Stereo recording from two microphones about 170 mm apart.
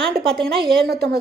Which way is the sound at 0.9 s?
75° right (ahead or behind).